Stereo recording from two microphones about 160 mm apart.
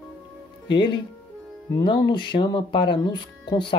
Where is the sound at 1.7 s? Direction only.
30° left (ahead or behind).